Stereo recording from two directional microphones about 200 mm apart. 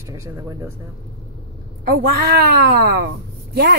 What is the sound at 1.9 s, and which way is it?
Speech, 55° right (ahead or behind).